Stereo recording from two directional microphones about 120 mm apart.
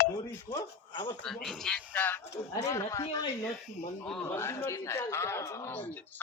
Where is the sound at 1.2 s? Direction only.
5° left (ahead or behind).